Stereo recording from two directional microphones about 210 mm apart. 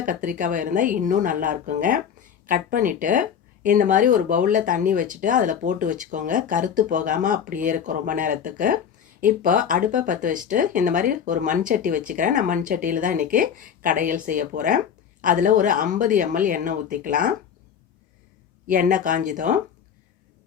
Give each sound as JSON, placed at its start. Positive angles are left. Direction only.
{"t": 0.0, "sound": "speech", "side_deg": -40}
{"t": 18.7, "sound": "speech", "side_deg": -40}